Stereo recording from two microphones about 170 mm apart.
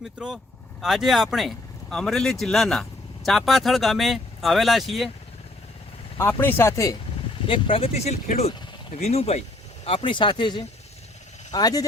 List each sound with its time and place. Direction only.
0.8 s speech: centre (ahead or behind)
6.1 s speech: 15° left (ahead or behind)
7.4 s speech: 30° left (ahead or behind)